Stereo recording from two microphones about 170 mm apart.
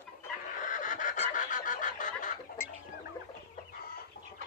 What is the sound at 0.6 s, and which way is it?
Fowl, 50° left (ahead or behind).